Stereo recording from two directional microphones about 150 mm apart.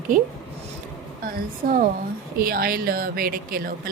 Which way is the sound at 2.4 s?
80° right.